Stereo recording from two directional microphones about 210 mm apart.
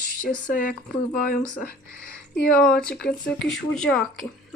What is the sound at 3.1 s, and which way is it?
Speech, 5° left (ahead or behind).